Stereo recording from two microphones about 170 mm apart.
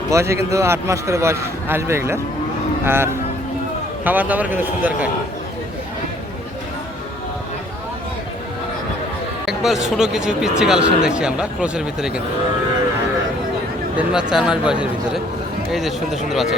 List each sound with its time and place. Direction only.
0.1 s a man's voice: 15° right (ahead or behind)
9.5 s speech: 5° right (ahead or behind)
13.9 s speech: 5° right (ahead or behind)